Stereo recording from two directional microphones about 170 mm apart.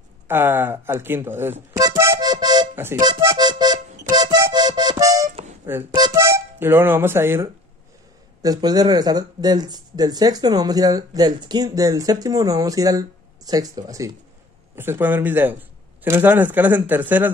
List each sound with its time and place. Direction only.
0.3 s speech: 15° right (ahead or behind)
2.7 s speech: 15° right (ahead or behind)
3.0 s music: 20° right (ahead or behind)
5.7 s speech: 15° right (ahead or behind)